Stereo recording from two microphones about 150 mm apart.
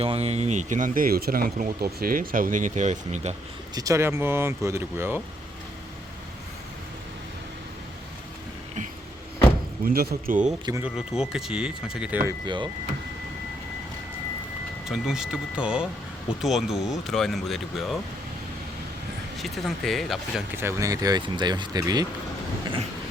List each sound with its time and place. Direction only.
0.0 s speech: 40° right (ahead or behind)
3.8 s speech: 20° right (ahead or behind)
9.8 s speech: 85° right; by 10.5 s 65° right (ahead or behind)
10.8 s speech: 5° right (ahead or behind)
14.8 s speech: 5° right (ahead or behind)
19.4 s speech: centre (ahead or behind)
20.6 s speech: 20° right (ahead or behind)